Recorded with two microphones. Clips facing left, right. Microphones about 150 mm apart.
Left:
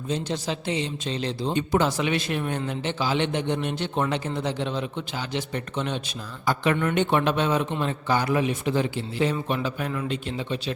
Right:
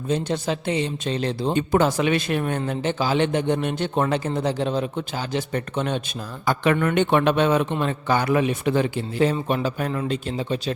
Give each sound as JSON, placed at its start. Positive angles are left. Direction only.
{"t": 0.1, "sound": "a man's voice", "side_deg": -55}
{"t": 6.4, "sound": "a man's voice", "side_deg": -65}